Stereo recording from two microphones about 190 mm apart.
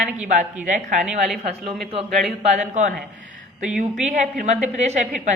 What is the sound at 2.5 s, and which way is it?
Speech, 40° right (ahead or behind).